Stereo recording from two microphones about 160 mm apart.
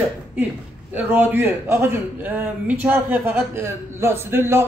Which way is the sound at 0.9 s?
10° right (ahead or behind).